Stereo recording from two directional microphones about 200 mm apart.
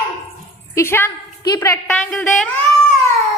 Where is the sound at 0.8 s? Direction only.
10° left (ahead or behind).